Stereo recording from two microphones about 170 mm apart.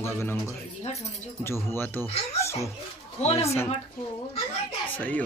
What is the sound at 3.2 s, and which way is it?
Speech, 35° left (ahead or behind).